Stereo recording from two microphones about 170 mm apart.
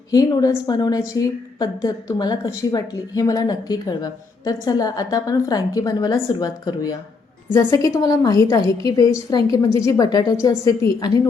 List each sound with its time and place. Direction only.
0.1 s a woman's voice: 20° left (ahead or behind)